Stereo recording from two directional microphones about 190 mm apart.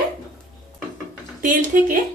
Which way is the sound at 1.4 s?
45° right (ahead or behind).